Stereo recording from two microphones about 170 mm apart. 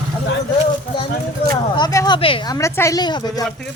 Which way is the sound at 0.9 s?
25° left (ahead or behind).